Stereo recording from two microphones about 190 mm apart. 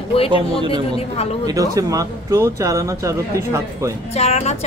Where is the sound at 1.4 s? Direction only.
20° right (ahead or behind).